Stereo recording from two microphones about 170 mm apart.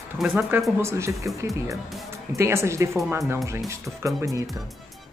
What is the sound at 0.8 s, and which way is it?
Speech, 15° right (ahead or behind).